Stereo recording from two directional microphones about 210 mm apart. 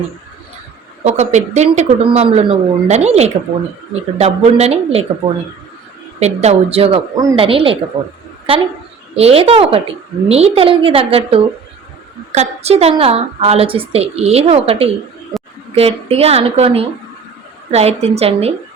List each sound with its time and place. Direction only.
1.0 s a woman's voice: 35° right (ahead or behind)
15.3 s a sound: centre (ahead or behind)
15.7 s a woman's voice: 30° right (ahead or behind)